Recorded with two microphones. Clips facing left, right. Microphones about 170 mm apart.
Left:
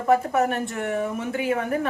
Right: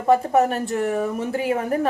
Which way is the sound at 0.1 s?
35° right (ahead or behind).